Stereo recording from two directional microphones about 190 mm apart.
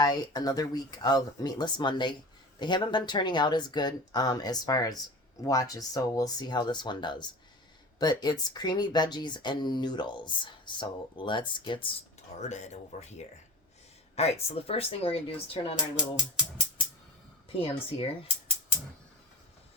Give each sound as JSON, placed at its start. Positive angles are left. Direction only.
{"t": 0.0, "sound": "speech", "side_deg": 20}
{"t": 12.4, "sound": "speech", "side_deg": 35}
{"t": 17.5, "sound": "speech", "side_deg": 30}